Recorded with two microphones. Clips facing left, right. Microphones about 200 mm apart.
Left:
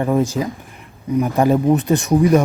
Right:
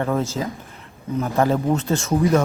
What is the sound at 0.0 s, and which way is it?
A man's voice, 15° left (ahead or behind).